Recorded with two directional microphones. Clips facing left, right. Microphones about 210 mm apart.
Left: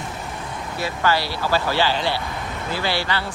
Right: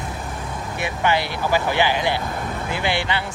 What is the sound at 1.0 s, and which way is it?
Speech, 20° right (ahead or behind).